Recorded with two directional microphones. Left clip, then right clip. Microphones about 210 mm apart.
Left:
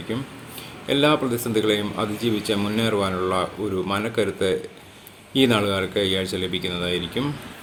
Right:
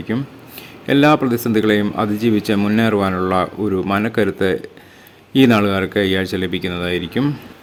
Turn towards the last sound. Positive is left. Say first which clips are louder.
# right 5 dB
turn(degrees=-45)  # may be behind; listen again after turning